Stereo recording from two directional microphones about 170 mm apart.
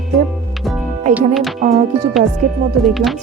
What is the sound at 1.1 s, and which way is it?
Speech, centre (ahead or behind).